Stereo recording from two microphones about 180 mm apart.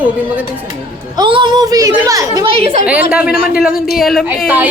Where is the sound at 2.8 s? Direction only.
5° right (ahead or behind).